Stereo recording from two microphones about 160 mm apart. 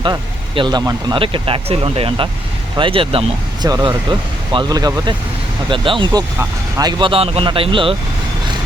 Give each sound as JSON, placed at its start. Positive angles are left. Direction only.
{"t": 0.0, "sound": "speech", "side_deg": -30}